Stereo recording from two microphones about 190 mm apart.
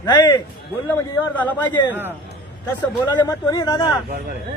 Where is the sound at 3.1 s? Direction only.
15° left (ahead or behind).